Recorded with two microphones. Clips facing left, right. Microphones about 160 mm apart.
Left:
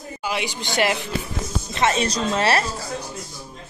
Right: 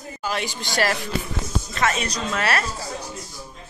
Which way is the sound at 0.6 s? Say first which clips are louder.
Left 2 dB; 15° left (ahead or behind).